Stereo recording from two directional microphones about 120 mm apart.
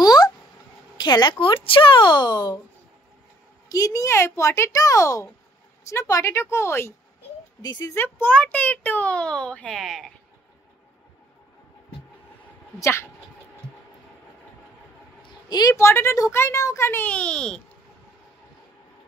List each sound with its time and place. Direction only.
0.0 s a sound: 35° left (ahead or behind)
0.9 s a woman's voice: 35° left (ahead or behind)
3.6 s speech: 30° left (ahead or behind)
7.6 s speech: 35° left (ahead or behind)
7.9 s a child's voice: 15° left (ahead or behind); by 10.1 s centre (ahead or behind)
12.7 s speech: 20° left (ahead or behind)
15.2 s a sound: 35° left (ahead or behind)
15.7 s speech: 20° left (ahead or behind)